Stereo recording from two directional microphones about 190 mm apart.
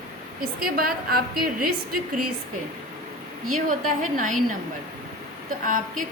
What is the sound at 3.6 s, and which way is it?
Speech, 45° right (ahead or behind).